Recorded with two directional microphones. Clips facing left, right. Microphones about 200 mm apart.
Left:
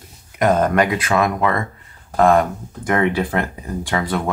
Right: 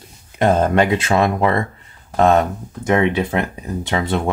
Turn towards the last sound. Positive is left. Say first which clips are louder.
# right 1 dB
turn(degrees=-25)  # may be behind; listen again after turning